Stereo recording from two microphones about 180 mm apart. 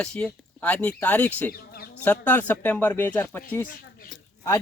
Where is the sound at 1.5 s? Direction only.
60° left (ahead or behind).